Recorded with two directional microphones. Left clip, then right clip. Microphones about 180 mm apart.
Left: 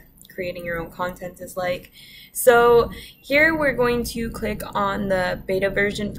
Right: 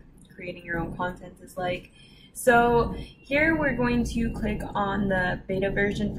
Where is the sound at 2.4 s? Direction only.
15° left (ahead or behind).